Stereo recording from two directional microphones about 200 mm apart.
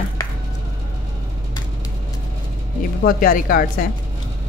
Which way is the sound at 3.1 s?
45° left (ahead or behind).